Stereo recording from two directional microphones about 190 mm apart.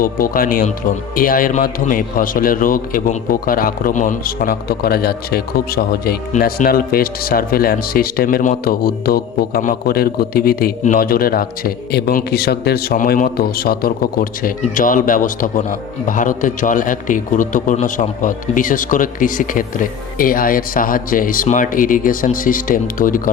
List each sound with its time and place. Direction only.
0.0 s a man's voice: 50° left (ahead or behind)